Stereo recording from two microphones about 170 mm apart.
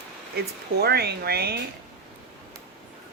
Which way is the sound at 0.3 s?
70° right (ahead or behind).